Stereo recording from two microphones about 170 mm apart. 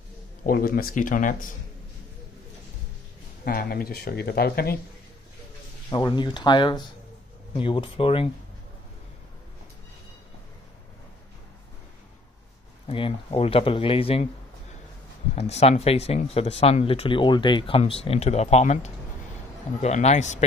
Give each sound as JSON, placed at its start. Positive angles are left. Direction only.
{"t": 0.4, "sound": "speech", "side_deg": 60}
{"t": 3.4, "sound": "speech", "side_deg": 60}
{"t": 5.9, "sound": "speech", "side_deg": 25}
{"t": 12.8, "sound": "speech", "side_deg": 30}
{"t": 15.3, "sound": "speech", "side_deg": 40}